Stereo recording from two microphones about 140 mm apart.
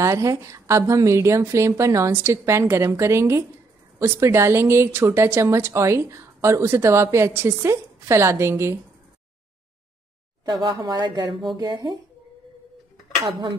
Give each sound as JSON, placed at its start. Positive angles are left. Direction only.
{"t": 0.0, "sound": "speech", "side_deg": -20}
{"t": 10.4, "sound": "speech", "side_deg": -30}